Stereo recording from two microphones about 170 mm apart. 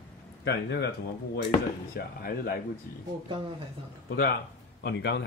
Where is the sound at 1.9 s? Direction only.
60° left (ahead or behind).